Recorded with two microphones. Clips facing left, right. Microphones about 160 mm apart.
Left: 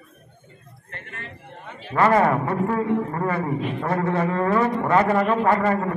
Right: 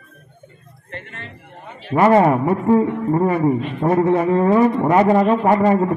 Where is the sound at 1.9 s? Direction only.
20° right (ahead or behind).